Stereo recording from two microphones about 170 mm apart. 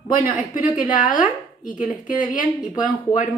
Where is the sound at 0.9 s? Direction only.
50° left (ahead or behind).